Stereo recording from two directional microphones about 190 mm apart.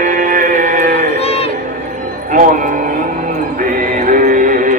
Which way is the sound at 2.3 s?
45° right (ahead or behind).